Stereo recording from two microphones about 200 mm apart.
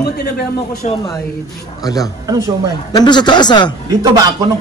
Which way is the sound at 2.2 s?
20° right (ahead or behind).